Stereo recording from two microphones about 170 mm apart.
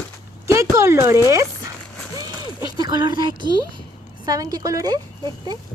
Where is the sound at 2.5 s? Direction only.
25° right (ahead or behind).